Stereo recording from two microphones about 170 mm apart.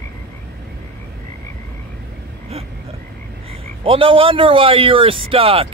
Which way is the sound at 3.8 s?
30° right (ahead or behind).